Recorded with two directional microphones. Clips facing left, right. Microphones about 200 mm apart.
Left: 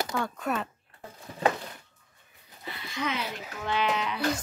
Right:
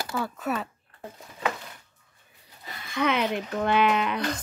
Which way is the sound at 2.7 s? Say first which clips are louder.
Right 6 dB; 50° right (ahead or behind).